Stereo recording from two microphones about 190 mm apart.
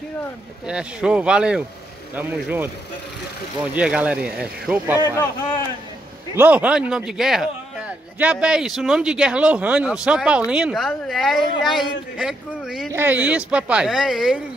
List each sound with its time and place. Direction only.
0.7 s speech: 5° right (ahead or behind)
3.7 s speech: 5° right (ahead or behind)
5.2 s a man's voice: 20° left (ahead or behind)
6.3 s a man's voice: 10° right (ahead or behind)